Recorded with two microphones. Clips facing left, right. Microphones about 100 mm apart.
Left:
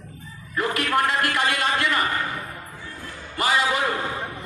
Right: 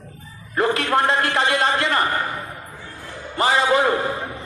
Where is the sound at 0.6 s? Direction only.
30° right (ahead or behind).